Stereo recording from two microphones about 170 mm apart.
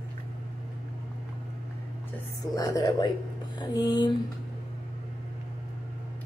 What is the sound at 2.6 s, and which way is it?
Speech, 20° left (ahead or behind).